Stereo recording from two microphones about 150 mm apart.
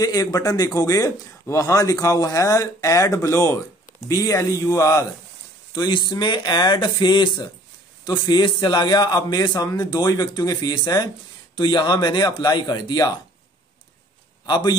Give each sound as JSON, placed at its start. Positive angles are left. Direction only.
{"t": 0.0, "sound": "speech", "side_deg": 25}
{"t": 14.4, "sound": "a man's voice", "side_deg": 30}